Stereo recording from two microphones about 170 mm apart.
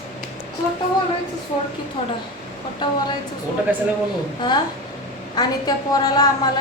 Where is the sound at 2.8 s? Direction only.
25° left (ahead or behind).